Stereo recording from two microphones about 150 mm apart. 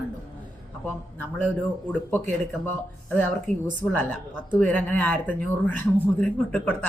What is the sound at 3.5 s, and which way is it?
Speech, 50° right (ahead or behind).